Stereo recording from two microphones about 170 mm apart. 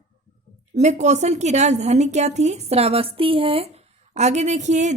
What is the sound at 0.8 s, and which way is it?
A woman's voice, 45° right (ahead or behind).